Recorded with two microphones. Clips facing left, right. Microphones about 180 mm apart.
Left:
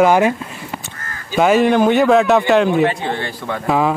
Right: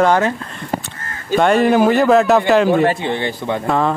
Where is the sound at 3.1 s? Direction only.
20° right (ahead or behind).